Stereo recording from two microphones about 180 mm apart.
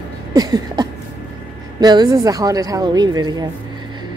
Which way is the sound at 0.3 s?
20° right (ahead or behind).